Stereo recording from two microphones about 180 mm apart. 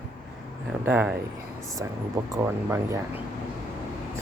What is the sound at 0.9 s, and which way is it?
Speech, 10° right (ahead or behind).